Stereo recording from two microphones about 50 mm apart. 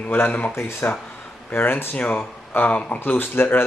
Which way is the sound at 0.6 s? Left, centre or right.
Left.